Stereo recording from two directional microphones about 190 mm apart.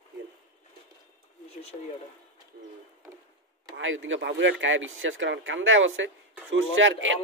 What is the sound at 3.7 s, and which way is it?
Speech, 90° right.